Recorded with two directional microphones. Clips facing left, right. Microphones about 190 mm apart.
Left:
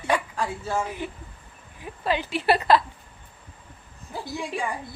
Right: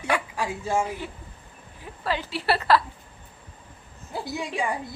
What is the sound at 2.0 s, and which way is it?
Speech, 20° left (ahead or behind).